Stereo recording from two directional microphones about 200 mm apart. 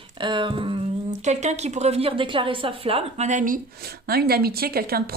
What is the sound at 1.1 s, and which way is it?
Speech, 35° right (ahead or behind).